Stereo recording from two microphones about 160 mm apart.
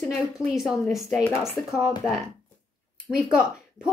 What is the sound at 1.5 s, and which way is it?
Speech, 15° left (ahead or behind).